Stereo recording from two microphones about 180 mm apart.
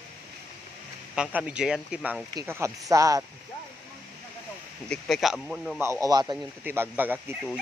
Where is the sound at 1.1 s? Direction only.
5° right (ahead or behind).